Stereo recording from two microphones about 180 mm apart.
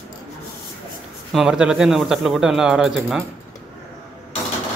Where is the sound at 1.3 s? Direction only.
5° right (ahead or behind).